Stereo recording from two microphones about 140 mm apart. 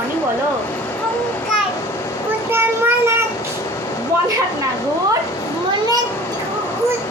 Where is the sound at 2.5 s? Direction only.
15° right (ahead or behind).